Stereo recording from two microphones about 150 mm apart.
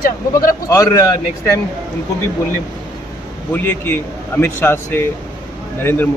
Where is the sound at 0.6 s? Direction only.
25° left (ahead or behind).